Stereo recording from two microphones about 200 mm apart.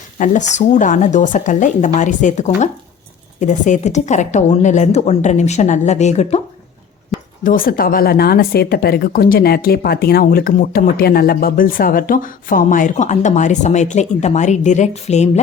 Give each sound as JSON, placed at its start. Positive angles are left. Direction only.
{"t": 0.2, "sound": "a woman's voice", "side_deg": 40}
{"t": 7.4, "sound": "a woman's voice", "side_deg": 45}